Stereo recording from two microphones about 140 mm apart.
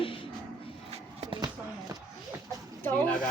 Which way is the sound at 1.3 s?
25° right (ahead or behind).